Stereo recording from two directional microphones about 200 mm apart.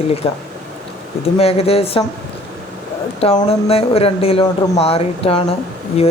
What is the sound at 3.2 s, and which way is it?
Speech, 30° left (ahead or behind).